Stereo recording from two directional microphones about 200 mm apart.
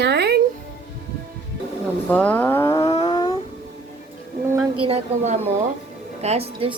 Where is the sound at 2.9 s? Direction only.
25° left (ahead or behind).